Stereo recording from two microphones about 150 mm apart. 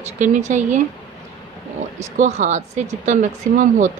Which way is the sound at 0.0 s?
55° right (ahead or behind).